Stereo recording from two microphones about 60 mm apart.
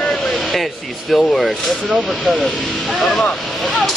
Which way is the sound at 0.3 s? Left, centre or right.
Centre.